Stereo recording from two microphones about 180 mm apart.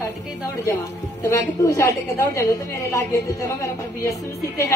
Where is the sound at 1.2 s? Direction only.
15° left (ahead or behind).